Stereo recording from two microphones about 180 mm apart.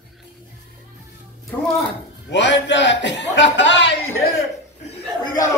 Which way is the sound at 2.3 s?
90° left.